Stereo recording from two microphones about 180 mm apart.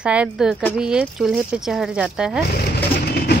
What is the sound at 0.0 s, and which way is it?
Speech, 5° right (ahead or behind).